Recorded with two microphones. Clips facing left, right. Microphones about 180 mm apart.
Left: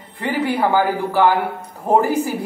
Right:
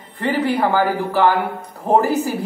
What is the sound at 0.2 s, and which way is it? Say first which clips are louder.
A woman's voice: right 1 dB; 10° left (ahead or behind).